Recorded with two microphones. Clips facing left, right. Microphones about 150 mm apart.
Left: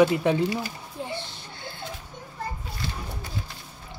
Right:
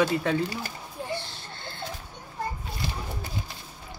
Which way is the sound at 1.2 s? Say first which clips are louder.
Even; 20° left (ahead or behind).